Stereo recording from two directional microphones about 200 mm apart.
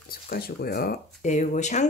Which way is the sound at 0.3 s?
50° left (ahead or behind).